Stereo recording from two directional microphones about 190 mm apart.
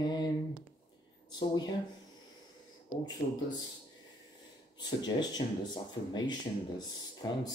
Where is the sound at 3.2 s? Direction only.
30° left (ahead or behind).